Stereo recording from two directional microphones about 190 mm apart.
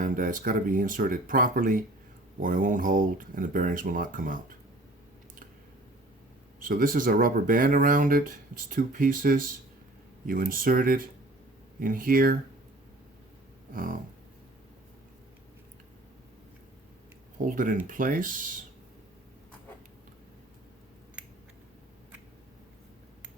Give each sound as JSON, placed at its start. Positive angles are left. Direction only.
{"t": 0.0, "sound": "speech", "side_deg": -45}
{"t": 6.6, "sound": "speech", "side_deg": -50}
{"t": 13.7, "sound": "speech", "side_deg": -45}
{"t": 17.4, "sound": "speech", "side_deg": -45}